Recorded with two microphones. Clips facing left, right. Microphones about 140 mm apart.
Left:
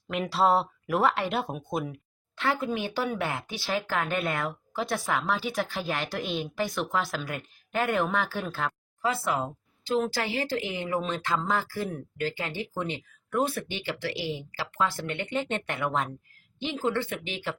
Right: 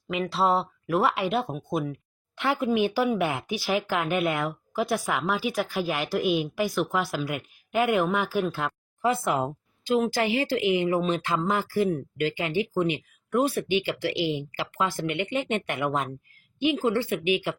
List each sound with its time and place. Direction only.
0.1 s speech: centre (ahead or behind)
2.3 s speech: 15° right (ahead or behind)